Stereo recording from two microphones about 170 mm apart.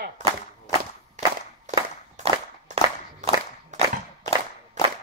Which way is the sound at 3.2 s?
45° right (ahead or behind).